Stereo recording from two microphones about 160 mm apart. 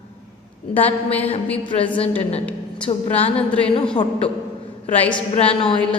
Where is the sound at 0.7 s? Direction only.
10° left (ahead or behind).